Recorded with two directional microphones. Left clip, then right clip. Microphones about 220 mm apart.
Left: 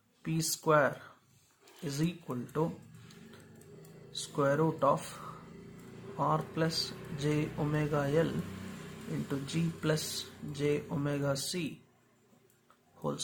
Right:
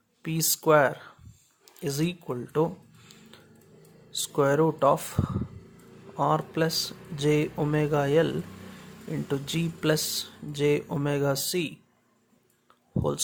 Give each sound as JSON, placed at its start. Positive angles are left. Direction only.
{"t": 0.2, "sound": "speech", "side_deg": -45}
{"t": 4.1, "sound": "speech", "side_deg": -50}
{"t": 9.3, "sound": "speech", "side_deg": -45}
{"t": 13.0, "sound": "speech", "side_deg": -50}